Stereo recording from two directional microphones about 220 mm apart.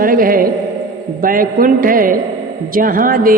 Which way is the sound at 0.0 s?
40° right (ahead or behind).